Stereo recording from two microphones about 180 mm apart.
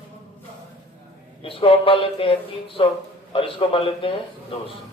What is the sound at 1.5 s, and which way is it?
Speech, 30° left (ahead or behind).